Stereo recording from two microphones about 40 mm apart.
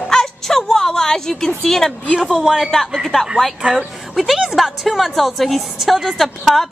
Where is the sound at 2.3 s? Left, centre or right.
Centre.